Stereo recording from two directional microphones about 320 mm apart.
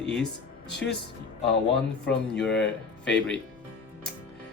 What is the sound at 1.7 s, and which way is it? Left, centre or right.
Speech, centre.